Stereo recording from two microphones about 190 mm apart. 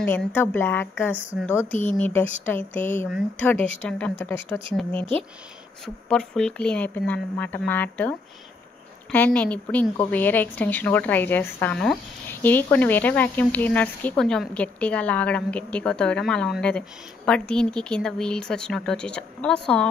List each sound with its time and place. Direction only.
0.0 s a woman's voice: 10° left (ahead or behind)
1.1 s speech: 10° right (ahead or behind)
1.9 s a woman's voice: 10° left (ahead or behind)
3.5 s speech: 30° right (ahead or behind)
3.8 s a woman's voice: 10° left (ahead or behind)
6.0 s a woman's voice: 5° left (ahead or behind)